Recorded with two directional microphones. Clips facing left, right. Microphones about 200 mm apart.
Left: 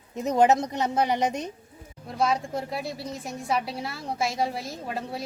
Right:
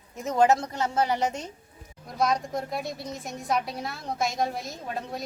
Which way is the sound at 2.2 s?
5° left (ahead or behind).